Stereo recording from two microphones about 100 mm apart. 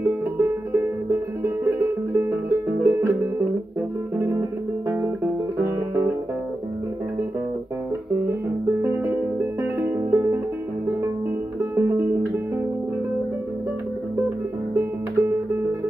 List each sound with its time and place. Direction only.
0.0 s music: 20° right (ahead or behind)
4.2 s music: 25° right (ahead or behind)
8.8 s music: 20° right (ahead or behind)
11.7 s music: 25° right (ahead or behind)
14.8 s music: 25° right (ahead or behind)